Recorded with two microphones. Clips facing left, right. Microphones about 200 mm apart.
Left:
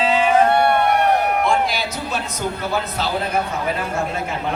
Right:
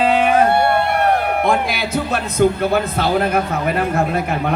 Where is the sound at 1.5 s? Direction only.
55° right (ahead or behind).